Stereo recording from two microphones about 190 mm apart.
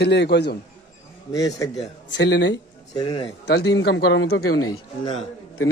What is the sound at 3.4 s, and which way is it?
A man's voice, 60° left (ahead or behind).